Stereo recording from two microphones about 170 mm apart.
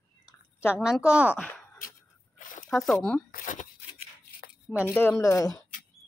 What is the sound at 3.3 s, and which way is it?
Speech, 50° left (ahead or behind).